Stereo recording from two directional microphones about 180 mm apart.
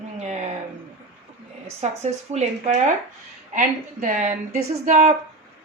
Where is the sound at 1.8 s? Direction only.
40° right (ahead or behind).